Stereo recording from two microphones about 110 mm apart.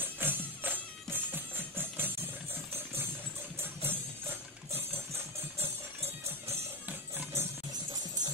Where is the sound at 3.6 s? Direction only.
20° right (ahead or behind).